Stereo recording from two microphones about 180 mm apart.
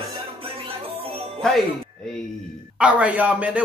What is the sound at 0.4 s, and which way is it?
Music, 30° right (ahead or behind).